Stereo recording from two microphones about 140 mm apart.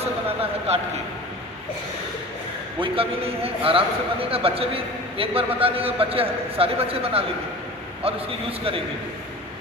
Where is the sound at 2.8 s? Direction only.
40° right (ahead or behind).